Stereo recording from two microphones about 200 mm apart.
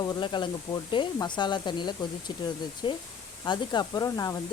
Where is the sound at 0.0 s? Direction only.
20° left (ahead or behind).